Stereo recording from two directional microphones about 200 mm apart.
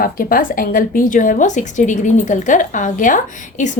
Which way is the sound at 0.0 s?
45° left (ahead or behind).